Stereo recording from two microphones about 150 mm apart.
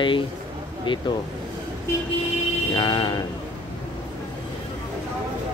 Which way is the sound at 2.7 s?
30° left (ahead or behind).